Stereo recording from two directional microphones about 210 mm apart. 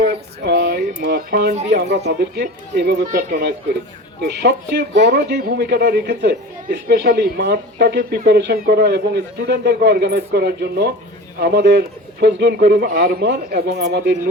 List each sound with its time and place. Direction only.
0.0 s music: 50° right (ahead or behind)
2.0 s speech: 55° right (ahead or behind)
4.2 s speech: 55° right (ahead or behind)